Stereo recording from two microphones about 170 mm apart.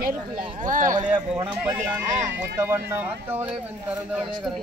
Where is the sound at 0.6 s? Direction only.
50° right (ahead or behind).